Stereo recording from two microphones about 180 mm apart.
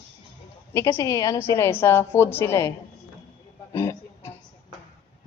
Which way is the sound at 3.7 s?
15° left (ahead or behind).